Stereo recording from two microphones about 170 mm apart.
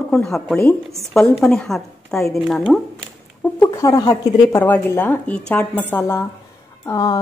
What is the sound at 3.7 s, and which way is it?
A woman's voice, 20° left (ahead or behind).